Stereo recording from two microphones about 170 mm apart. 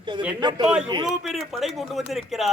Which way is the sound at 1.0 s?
Centre (ahead or behind).